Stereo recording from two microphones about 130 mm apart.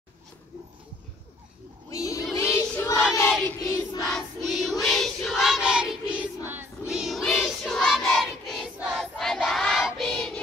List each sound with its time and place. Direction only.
1.9 s a sound: 25° left (ahead or behind)
2.3 s child singing: 20° left (ahead or behind)
3.7 s music: 30° left (ahead or behind)
4.1 s choir: centre (ahead or behind)
6.4 s choir: 15° right (ahead or behind)
6.9 s choir: centre (ahead or behind)